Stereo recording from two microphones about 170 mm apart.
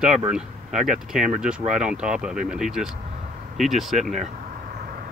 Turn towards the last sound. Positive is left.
turn(degrees=-45)  # may be behind; listen again after turning